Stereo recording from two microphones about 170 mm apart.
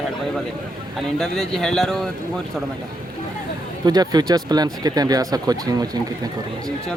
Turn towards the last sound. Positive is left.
turn(degrees=-20)  # may be behind; listen again after turning